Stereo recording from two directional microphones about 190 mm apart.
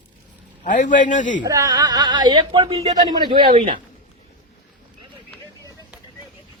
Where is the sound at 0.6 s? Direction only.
40° left (ahead or behind).